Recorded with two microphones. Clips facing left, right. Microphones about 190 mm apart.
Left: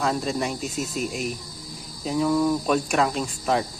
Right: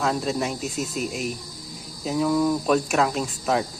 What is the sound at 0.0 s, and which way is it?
Speech, centre (ahead or behind).